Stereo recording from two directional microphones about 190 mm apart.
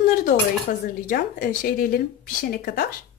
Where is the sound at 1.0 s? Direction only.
45° left (ahead or behind).